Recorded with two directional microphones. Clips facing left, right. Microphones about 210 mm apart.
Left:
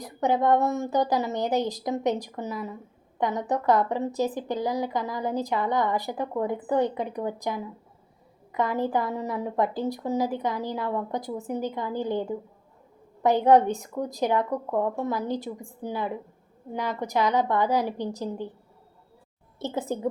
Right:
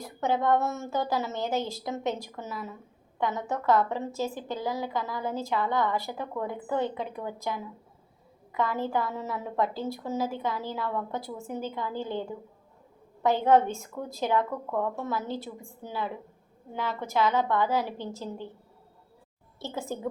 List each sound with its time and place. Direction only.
0.0 s a woman's voice: 15° left (ahead or behind)
19.5 s a woman's voice: 20° left (ahead or behind)